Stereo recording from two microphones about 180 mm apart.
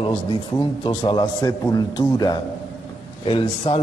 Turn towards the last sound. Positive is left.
turn(degrees=30)  # may be behind; listen again after turning